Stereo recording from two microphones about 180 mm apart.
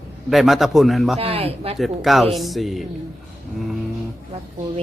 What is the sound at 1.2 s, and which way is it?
Speech, 35° right (ahead or behind).